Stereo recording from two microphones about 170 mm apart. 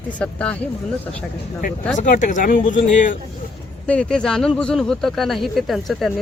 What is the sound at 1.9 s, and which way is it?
Speech, 45° left (ahead or behind).